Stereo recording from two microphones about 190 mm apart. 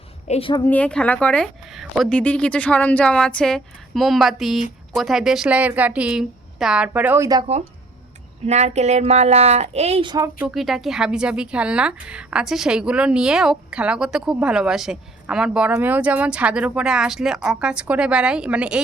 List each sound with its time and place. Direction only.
0.3 s a woman's voice: 30° left (ahead or behind)
0.6 s a woman's voice: 10° left (ahead or behind); by 7.4 s 15° right (ahead or behind)
8.4 s speech: 35° right (ahead or behind)
10.4 s speech: centre (ahead or behind)